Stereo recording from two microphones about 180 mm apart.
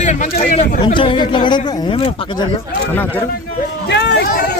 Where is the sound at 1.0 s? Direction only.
25° left (ahead or behind).